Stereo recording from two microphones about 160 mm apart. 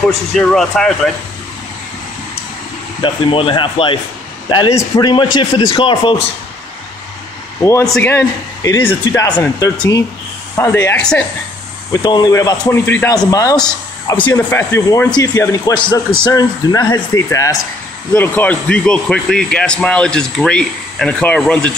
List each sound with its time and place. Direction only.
0.4 s speech: 5° left (ahead or behind)
3.0 s a man's voice: 35° left (ahead or behind)
5.1 s a man's voice: 30° left (ahead or behind)
7.9 s speech: 15° left (ahead or behind)
11.9 s speech: 25° left (ahead or behind); by 21.7 s 5° left (ahead or behind)